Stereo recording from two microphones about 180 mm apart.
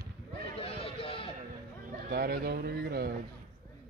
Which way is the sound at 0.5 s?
30° left (ahead or behind).